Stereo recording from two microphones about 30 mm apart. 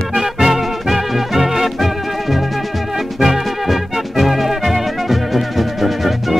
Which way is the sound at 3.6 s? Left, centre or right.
Centre.